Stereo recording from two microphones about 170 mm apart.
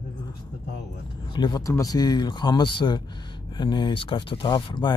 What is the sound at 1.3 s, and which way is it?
Speech, 25° left (ahead or behind).